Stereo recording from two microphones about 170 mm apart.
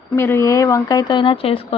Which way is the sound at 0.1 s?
15° left (ahead or behind).